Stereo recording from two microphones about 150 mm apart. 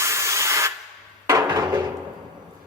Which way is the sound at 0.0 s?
20° right (ahead or behind).